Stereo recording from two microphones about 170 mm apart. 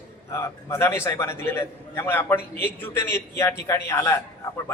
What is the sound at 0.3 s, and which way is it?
A man's voice, 15° left (ahead or behind).